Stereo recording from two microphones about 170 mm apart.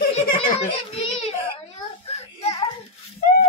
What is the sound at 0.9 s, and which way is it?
Baby cry, 35° left (ahead or behind).